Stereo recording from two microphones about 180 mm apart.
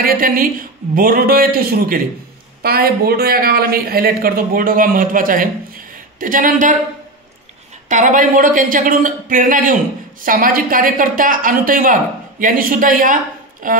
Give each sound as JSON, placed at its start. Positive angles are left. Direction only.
{"t": 0.0, "sound": "speech", "side_deg": -50}
{"t": 7.9, "sound": "speech", "side_deg": -45}